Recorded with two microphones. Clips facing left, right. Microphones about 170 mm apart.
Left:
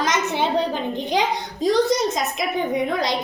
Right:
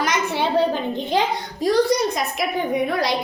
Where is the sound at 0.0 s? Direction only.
20° left (ahead or behind).